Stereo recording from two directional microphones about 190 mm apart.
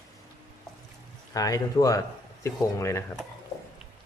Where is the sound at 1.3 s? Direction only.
20° left (ahead or behind).